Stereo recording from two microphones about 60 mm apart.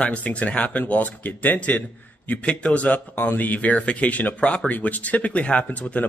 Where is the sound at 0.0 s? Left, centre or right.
Left.